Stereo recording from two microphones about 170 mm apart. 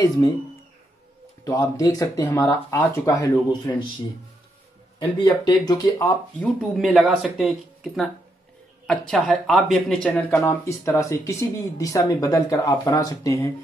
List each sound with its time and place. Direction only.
1.4 s speech: 20° left (ahead or behind)
4.9 s speech: 25° left (ahead or behind)
6.8 s speech: centre (ahead or behind)
10.4 s speech: 20° left (ahead or behind)